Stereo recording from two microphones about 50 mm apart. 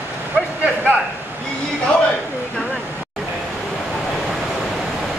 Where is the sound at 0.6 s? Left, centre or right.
Right.